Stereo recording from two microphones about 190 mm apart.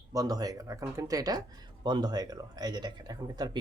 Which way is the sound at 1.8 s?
20° right (ahead or behind).